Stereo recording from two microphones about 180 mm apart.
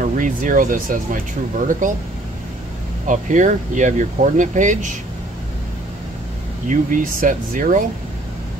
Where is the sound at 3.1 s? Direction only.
45° right (ahead or behind).